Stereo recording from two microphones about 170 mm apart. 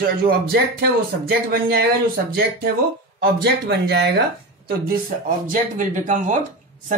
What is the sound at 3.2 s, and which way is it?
Speech, 75° right (ahead or behind).